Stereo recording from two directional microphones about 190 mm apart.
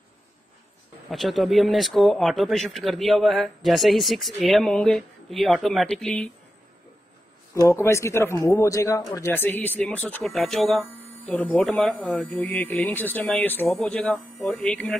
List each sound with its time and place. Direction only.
1.1 s speech: centre (ahead or behind)
7.6 s speech: 15° left (ahead or behind)